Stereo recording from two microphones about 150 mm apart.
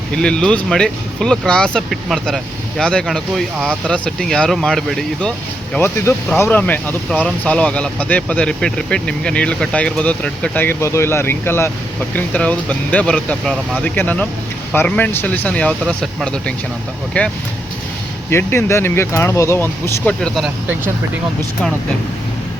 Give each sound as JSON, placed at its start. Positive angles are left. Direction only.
{"t": 0.1, "sound": "speech", "side_deg": 5}
{"t": 20.2, "sound": "speech", "side_deg": 0}